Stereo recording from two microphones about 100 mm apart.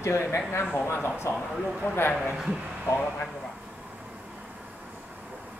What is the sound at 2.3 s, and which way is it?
Speech, 10° right (ahead or behind).